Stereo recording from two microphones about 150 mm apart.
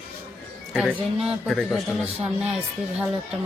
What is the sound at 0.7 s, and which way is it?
Speech, centre (ahead or behind).